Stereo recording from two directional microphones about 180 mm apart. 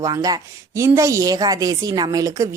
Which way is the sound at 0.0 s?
20° right (ahead or behind).